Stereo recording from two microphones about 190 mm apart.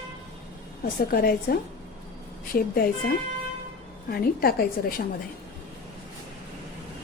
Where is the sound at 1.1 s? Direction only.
55° left (ahead or behind).